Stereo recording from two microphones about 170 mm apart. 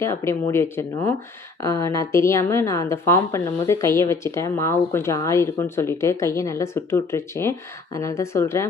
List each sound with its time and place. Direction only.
0.0 s a woman's voice: 15° left (ahead or behind)